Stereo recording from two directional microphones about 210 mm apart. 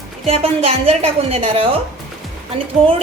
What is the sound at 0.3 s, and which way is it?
A woman's voice, 30° right (ahead or behind).